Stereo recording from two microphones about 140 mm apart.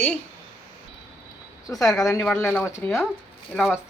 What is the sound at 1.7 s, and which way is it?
A man's voice, 25° left (ahead or behind).